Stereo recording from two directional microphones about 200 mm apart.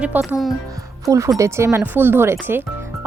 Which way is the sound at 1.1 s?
15° right (ahead or behind).